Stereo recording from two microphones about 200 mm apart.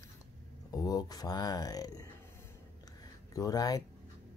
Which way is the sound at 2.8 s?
20° left (ahead or behind).